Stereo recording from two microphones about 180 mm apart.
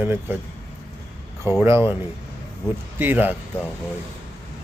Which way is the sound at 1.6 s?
15° right (ahead or behind).